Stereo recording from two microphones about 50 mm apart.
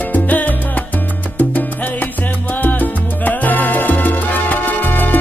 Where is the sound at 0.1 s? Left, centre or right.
Left.